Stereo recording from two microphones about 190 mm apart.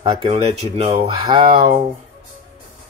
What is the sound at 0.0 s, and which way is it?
Speech, 30° right (ahead or behind).